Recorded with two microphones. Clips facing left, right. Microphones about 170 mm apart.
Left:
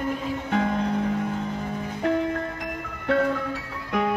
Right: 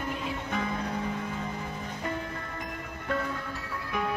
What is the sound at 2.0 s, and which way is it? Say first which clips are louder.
Music: left 13 dB; 75° left (ahead or behind).